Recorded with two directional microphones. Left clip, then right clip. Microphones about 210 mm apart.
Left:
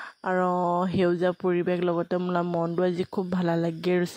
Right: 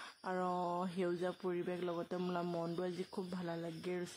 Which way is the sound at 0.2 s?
40° left (ahead or behind).